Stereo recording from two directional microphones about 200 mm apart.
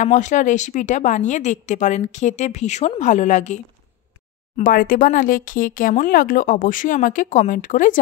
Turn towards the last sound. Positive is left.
turn(degrees=40)  # may be behind; listen again after turning